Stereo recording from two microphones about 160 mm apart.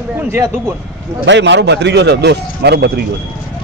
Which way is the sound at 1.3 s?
90° right.